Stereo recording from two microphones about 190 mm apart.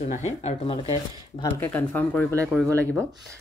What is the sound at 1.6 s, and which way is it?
Speech, 10° left (ahead or behind).